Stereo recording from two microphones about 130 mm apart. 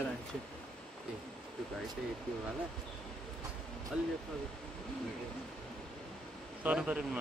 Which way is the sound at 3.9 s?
10° right (ahead or behind).